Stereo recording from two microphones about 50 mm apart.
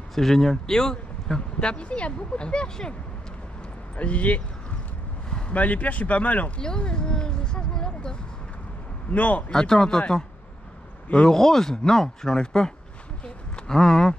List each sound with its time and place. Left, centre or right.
0.1 s speech: centre
3.9 s speech: left
6.6 s speech: centre
9.1 s speech: left
9.5 s speech: centre
11.2 s speech: centre
13.2 s a sound: centre